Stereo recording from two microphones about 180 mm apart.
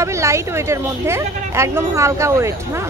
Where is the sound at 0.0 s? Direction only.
15° right (ahead or behind).